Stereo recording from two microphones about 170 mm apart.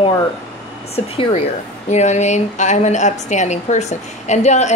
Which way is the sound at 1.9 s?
45° left (ahead or behind).